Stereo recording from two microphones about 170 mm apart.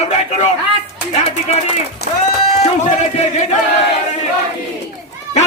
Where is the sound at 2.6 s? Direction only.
40° left (ahead or behind).